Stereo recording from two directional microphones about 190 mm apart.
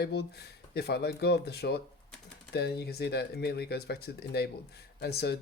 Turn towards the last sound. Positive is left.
turn(degrees=55)  # may be behind; listen again after turning